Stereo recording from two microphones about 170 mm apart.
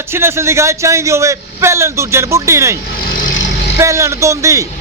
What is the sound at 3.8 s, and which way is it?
Speech, 15° right (ahead or behind).